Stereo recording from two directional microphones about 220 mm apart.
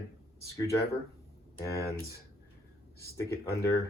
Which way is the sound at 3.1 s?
15° left (ahead or behind).